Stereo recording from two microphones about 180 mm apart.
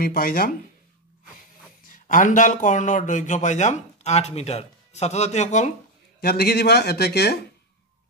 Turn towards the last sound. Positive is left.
turn(degrees=65)  # may be behind; listen again after turning